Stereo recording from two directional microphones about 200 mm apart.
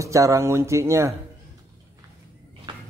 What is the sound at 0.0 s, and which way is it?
Speech, 15° right (ahead or behind).